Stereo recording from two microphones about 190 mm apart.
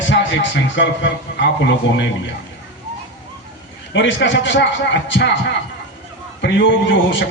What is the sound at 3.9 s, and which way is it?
A man's voice, 75° left (ahead or behind).